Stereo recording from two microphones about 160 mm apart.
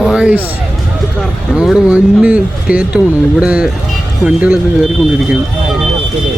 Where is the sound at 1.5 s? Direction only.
5° right (ahead or behind).